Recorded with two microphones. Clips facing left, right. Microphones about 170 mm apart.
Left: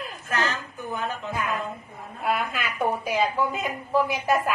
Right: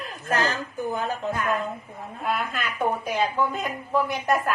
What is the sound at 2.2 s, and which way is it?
Speech, 5° left (ahead or behind).